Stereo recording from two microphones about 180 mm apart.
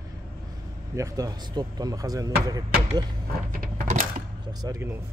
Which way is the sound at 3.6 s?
45° right (ahead or behind).